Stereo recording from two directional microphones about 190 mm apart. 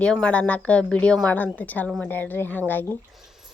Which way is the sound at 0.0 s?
5° left (ahead or behind).